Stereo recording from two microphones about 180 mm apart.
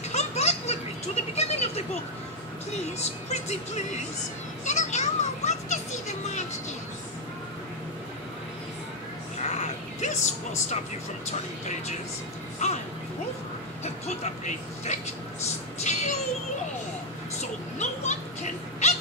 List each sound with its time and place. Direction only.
0.1 s a sound: 40° left (ahead or behind)
3.0 s speech: 40° left (ahead or behind)
4.6 s children playing: 40° left (ahead or behind)
9.4 s a sound: 40° left (ahead or behind)
12.6 s speech: 40° left (ahead or behind)
13.8 s speech: 40° left (ahead or behind)
17.4 s speech: 40° left (ahead or behind)